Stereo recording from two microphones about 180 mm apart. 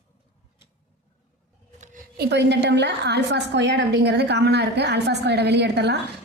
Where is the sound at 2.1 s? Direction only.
70° right (ahead or behind).